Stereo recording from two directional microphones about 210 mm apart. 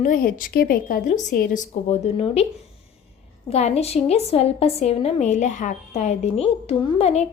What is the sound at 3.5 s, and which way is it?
A woman's voice, 30° left (ahead or behind).